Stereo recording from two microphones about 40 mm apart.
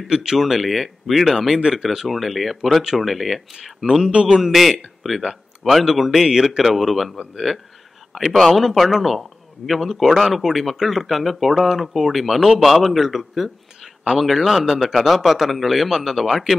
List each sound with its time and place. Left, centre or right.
0.1 s speech: centre
0.5 s speech: centre
2.0 s speech: centre
6.6 s speech: centre